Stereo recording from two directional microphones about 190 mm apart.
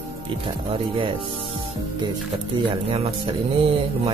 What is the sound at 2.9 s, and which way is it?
Music, 30° right (ahead or behind).